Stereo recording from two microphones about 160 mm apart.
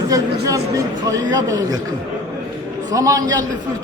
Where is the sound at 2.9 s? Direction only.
20° right (ahead or behind).